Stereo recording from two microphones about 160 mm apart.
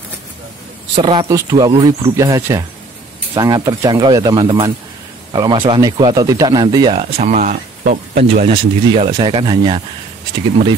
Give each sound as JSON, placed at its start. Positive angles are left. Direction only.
{"t": 0.9, "sound": "speech", "side_deg": -30}
{"t": 7.0, "sound": "speech", "side_deg": -45}
{"t": 8.5, "sound": "speech", "side_deg": -40}